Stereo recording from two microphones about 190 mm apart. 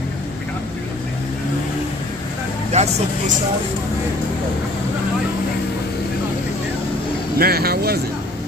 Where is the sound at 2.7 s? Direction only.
35° right (ahead or behind).